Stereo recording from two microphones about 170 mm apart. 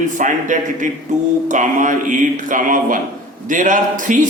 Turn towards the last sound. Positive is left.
turn(degrees=-50)  # may be behind; listen again after turning